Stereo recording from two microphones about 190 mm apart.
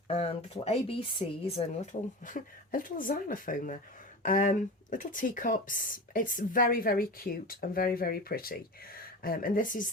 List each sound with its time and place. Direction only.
0.1 s speech: 30° left (ahead or behind)